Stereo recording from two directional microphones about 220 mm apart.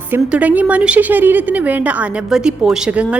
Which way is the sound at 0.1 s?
5° right (ahead or behind).